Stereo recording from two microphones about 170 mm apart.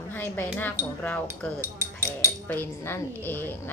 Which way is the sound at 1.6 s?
15° right (ahead or behind).